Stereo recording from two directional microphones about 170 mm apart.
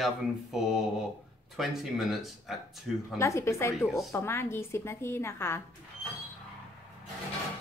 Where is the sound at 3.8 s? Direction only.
Centre (ahead or behind).